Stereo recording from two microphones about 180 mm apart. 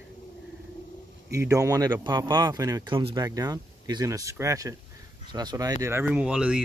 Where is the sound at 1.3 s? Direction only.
15° right (ahead or behind).